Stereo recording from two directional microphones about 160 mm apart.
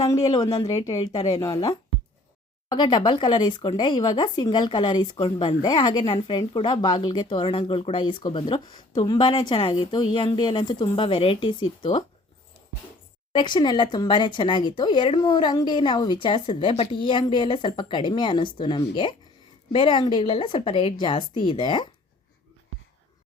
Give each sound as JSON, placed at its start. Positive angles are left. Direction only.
{"t": 0.0, "sound": "speech", "side_deg": 20}
{"t": 13.3, "sound": "a woman's voice", "side_deg": 30}